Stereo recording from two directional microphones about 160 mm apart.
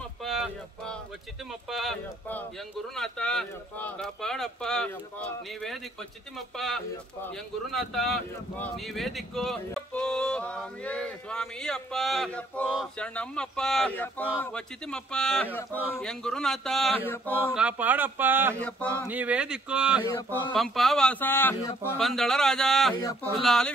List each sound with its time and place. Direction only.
0.2 s a sound: centre (ahead or behind)
1.5 s speech: centre (ahead or behind)
17.6 s speech: 10° right (ahead or behind)
18.6 s speech: 10° left (ahead or behind)
18.9 s speech: 10° right (ahead or behind)
20.1 s a sound: 20° left (ahead or behind)
20.5 s speech: centre (ahead or behind)
21.9 s speech: centre (ahead or behind)